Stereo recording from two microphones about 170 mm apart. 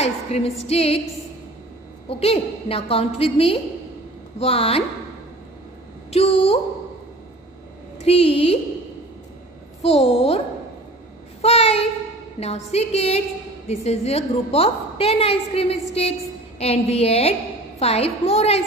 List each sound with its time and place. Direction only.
0.0 s music: 40° left (ahead or behind)
0.7 s a woman's voice: 35° left (ahead or behind)
2.0 s a woman's voice: 35° left (ahead or behind)
6.0 s a woman's voice: 35° left (ahead or behind)
8.0 s a woman's voice: 35° left (ahead or behind)
9.8 s a woman's voice: 35° left (ahead or behind)
11.4 s a woman's voice: 40° left (ahead or behind)